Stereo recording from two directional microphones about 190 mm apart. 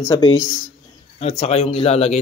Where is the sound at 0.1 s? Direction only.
20° left (ahead or behind).